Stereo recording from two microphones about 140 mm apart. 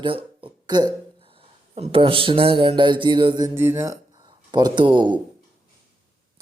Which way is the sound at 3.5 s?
15° right (ahead or behind).